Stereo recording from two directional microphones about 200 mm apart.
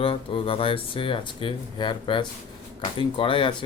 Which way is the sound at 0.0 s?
25° left (ahead or behind).